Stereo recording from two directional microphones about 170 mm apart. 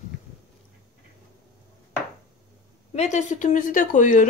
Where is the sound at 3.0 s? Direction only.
45° left (ahead or behind).